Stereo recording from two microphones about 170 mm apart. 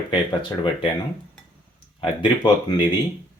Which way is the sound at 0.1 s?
30° left (ahead or behind).